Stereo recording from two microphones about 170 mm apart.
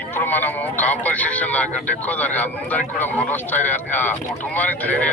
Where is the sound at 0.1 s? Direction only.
10° left (ahead or behind).